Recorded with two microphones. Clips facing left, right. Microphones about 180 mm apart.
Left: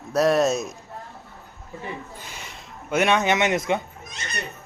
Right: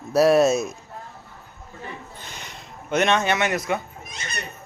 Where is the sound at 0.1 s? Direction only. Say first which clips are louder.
Right 3 dB; 5° right (ahead or behind).